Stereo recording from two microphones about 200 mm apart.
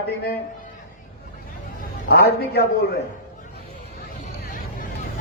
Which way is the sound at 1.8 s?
50° left (ahead or behind).